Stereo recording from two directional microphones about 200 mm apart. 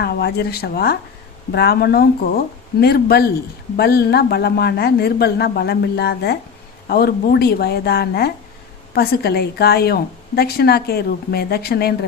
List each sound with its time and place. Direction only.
0.0 s a woman's voice: 55° left (ahead or behind)